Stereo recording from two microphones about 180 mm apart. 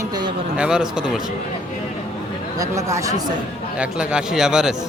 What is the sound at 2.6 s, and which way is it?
Speech, 15° right (ahead or behind).